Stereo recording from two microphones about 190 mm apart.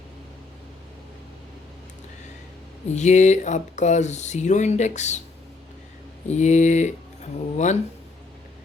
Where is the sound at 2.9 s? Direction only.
40° left (ahead or behind).